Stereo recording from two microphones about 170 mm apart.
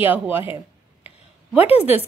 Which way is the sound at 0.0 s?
10° right (ahead or behind).